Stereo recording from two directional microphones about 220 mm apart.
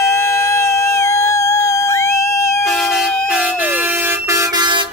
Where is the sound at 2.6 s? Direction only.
Centre (ahead or behind); by 4.8 s 20° right (ahead or behind).